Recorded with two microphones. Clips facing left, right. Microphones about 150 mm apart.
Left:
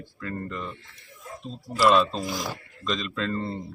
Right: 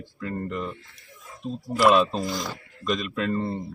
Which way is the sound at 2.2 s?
5° left (ahead or behind).